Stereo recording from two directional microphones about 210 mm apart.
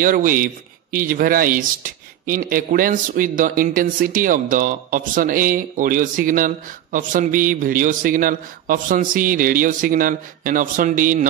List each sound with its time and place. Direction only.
0.0 s speech: 40° right (ahead or behind)